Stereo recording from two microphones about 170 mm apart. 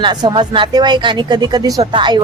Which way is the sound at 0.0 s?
25° right (ahead or behind).